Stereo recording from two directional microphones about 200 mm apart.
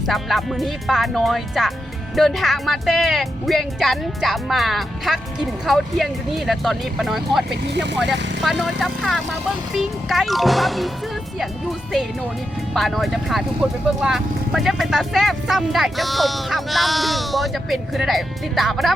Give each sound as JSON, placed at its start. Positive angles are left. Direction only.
{"t": 0.1, "sound": "speech", "side_deg": 0}
{"t": 7.7, "sound": "speech", "side_deg": -60}
{"t": 8.4, "sound": "speech", "side_deg": 0}
{"t": 12.7, "sound": "speech", "side_deg": 0}